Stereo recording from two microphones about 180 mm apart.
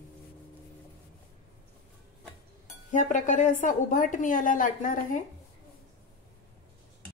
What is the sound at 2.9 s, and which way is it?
A woman's voice, 45° left (ahead or behind).